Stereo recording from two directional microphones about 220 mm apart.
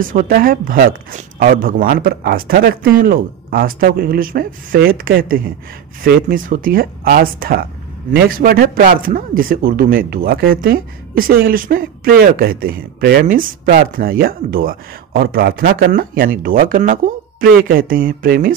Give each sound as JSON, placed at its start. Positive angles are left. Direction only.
{"t": 0.0, "sound": "speech", "side_deg": -40}